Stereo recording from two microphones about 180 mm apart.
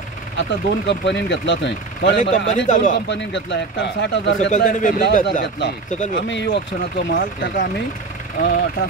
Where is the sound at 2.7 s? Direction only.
45° left (ahead or behind).